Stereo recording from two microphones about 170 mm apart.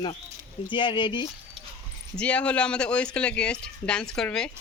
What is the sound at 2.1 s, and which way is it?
Speech, 5° left (ahead or behind).